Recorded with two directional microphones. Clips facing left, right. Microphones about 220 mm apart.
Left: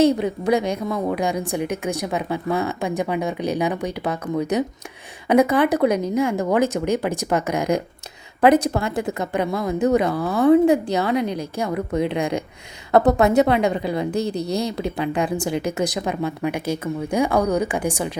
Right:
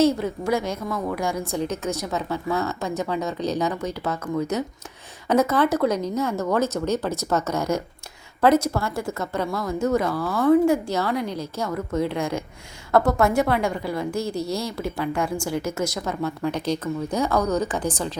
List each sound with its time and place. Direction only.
0.0 s a woman's voice: 15° left (ahead or behind)